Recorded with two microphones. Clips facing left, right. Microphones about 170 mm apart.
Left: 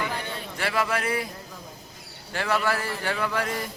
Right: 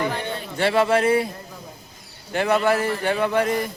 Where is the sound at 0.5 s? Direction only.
30° right (ahead or behind).